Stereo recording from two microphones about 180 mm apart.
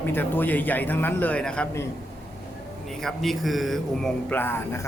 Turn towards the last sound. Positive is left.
turn(degrees=10)  # may be behind; listen again after turning